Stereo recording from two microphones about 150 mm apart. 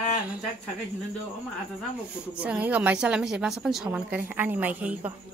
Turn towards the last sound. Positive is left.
turn(degrees=-10)  # may be behind; listen again after turning